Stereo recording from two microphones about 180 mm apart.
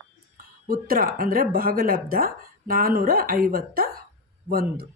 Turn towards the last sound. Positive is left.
turn(degrees=-55)  # may be behind; listen again after turning